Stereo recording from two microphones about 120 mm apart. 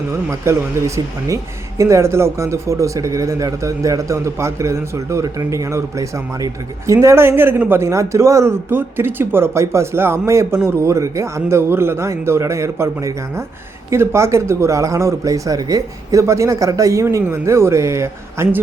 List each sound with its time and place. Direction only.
0.3 s speech: 25° right (ahead or behind)